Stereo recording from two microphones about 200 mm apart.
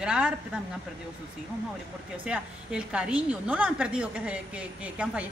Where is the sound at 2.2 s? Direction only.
5° right (ahead or behind).